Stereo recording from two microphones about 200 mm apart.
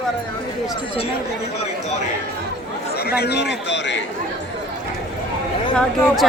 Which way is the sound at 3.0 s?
50° left (ahead or behind).